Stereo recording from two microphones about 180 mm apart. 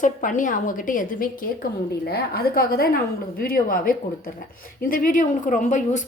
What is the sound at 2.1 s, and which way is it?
A woman's voice, 60° left (ahead or behind).